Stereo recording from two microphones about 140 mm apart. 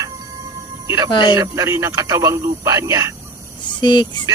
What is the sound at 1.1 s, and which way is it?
Music, 35° left (ahead or behind).